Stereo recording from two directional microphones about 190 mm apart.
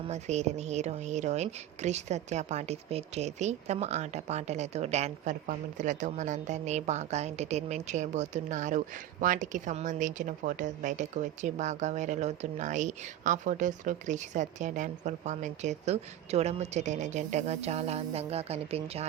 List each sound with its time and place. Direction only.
0.0 s a woman's voice: 35° right (ahead or behind)